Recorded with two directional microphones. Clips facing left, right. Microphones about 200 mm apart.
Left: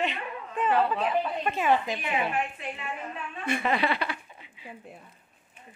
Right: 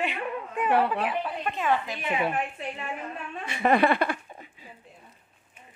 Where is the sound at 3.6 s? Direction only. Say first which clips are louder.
Right 8 dB; 50° right (ahead or behind).